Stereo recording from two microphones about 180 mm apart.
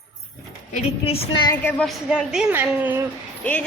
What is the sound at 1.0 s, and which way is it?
Speech, 30° left (ahead or behind).